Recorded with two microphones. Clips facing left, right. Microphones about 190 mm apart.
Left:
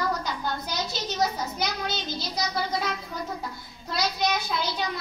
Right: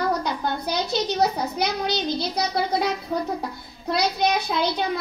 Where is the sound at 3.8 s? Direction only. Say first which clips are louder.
Right 5 dB; 60° right (ahead or behind).